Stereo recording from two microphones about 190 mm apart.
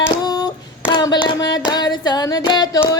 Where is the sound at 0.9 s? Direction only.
20° left (ahead or behind).